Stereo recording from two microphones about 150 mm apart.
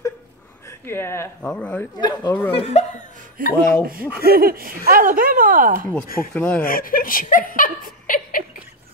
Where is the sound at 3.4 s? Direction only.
70° right (ahead or behind).